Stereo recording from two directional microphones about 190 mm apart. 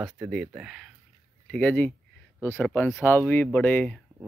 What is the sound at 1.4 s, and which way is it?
Speech, 5° left (ahead or behind).